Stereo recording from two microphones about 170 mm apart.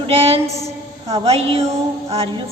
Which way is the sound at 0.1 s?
35° right (ahead or behind).